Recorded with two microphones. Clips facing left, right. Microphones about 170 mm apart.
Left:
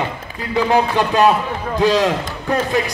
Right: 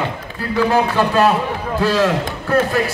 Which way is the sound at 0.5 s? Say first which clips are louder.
Even; 15° left (ahead or behind).